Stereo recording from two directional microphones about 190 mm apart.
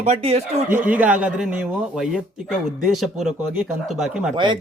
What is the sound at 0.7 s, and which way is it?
A man's voice, 10° right (ahead or behind).